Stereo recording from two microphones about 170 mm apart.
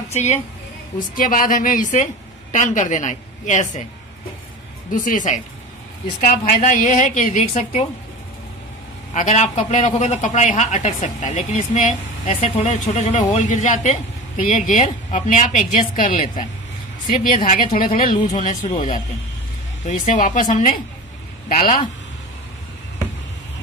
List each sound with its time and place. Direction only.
0.1 s a woman's voice: 40° left (ahead or behind)
1.1 s speech: 55° left (ahead or behind)
4.9 s speech: 50° left (ahead or behind)
9.1 s speech: 45° left (ahead or behind)
18.3 s speech: 45° left (ahead or behind)
19.9 s speech: 45° left (ahead or behind)